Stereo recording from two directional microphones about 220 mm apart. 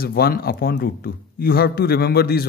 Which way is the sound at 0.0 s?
40° left (ahead or behind).